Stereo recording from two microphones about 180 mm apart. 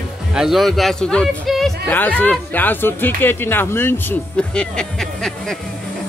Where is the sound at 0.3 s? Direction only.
Centre (ahead or behind).